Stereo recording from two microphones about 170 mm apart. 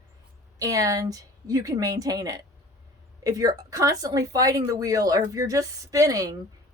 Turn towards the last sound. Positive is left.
turn(degrees=-20)  # may be behind; listen again after turning